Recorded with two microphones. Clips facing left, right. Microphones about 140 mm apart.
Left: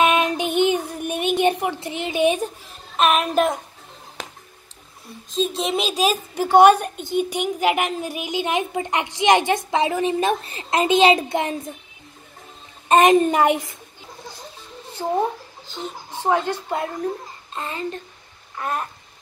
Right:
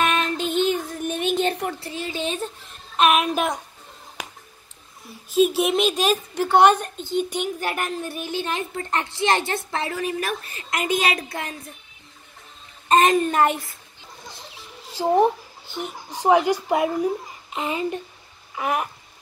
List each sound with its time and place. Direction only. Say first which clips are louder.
0.0 s female singing: left 4 dB; 15° left (ahead or behind)
0.6 s music: left 3 dB; 15° left (ahead or behind)
1.3 s a sound: left 5 dB; 15° left (ahead or behind)
1.8 s a woman's voice: left 7 dB; 20° left (ahead or behind)
3.0 s speech: left 1 dB; centre (ahead or behind)
4.2 s a sound: left 1 dB; 10° right (ahead or behind)
5.3 s a woman's voice: right 4 dB; 10° right (ahead or behind); by 11.5 s 20° left (ahead or behind)
12.8 s a woman's voice: left 3 dB; 20° left (ahead or behind)
15.0 s speech: right 4 dB; 15° right (ahead or behind)
18.5 s a sound: right 2 dB; 10° right (ahead or behind)